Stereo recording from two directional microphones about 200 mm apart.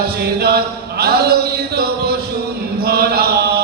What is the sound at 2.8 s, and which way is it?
Chant, 50° right (ahead or behind).